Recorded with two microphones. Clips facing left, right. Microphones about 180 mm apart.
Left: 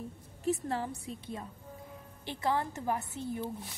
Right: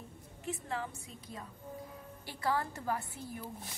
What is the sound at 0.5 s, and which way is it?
A woman's voice, 40° left (ahead or behind).